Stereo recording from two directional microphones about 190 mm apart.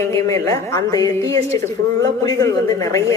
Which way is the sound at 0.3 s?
15° left (ahead or behind).